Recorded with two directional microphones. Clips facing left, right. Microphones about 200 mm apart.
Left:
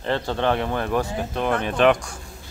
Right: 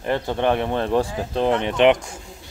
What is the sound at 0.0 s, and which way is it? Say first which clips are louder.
Speech: right 2 dB; 15° right (ahead or behind).